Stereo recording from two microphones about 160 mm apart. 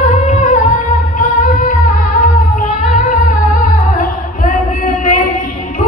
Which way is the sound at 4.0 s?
60° left (ahead or behind).